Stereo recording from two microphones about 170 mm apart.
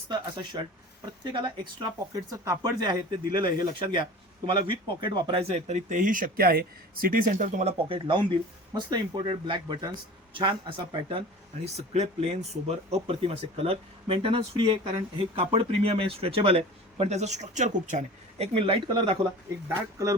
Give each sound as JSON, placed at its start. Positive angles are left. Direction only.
{"t": 1.2, "sound": "speech", "side_deg": -25}
{"t": 19.6, "sound": "speech", "side_deg": -20}